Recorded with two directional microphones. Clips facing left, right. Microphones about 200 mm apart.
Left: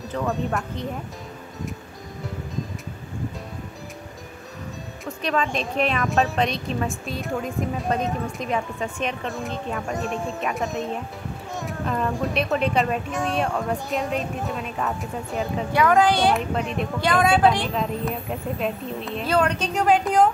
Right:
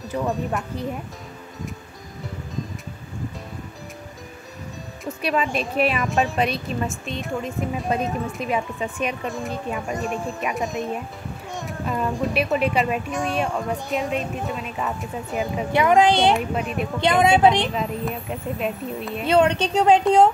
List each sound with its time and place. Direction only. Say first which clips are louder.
0.1 s a woman's voice: right 1 dB; 5° right (ahead or behind)
5.2 s a woman's voice: right 1 dB; 5° right (ahead or behind)
11.6 s a woman's voice: even; 5° right (ahead or behind)
15.7 s a woman's voice: right 2 dB; 20° right (ahead or behind)
16.3 s speech: right 1 dB; 5° right (ahead or behind)
17.0 s a woman's voice: right 2 dB; 25° right (ahead or behind)
17.7 s a woman's voice: even; centre (ahead or behind)
19.2 s a woman's voice: right 4 dB; 25° right (ahead or behind)